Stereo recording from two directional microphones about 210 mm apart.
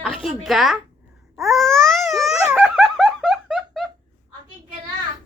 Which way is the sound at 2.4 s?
5° right (ahead or behind).